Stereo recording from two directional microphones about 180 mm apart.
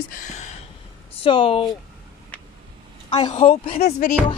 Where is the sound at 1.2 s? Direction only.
30° left (ahead or behind).